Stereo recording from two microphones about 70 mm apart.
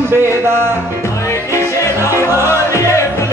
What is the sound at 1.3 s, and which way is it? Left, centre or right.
Music, left.